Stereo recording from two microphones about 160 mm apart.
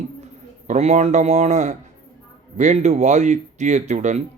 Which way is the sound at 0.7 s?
45° right (ahead or behind).